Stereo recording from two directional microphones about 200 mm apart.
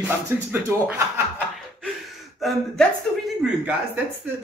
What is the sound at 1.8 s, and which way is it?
Gasp, centre (ahead or behind).